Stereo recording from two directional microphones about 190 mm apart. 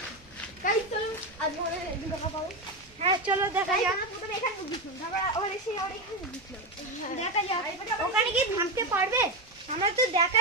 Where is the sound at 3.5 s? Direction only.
10° right (ahead or behind).